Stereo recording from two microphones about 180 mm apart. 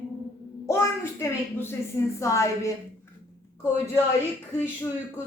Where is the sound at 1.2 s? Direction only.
15° left (ahead or behind).